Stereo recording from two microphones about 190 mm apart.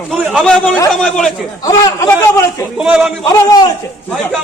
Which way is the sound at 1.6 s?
20° left (ahead or behind).